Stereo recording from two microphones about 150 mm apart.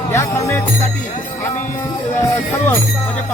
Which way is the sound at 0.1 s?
20° left (ahead or behind).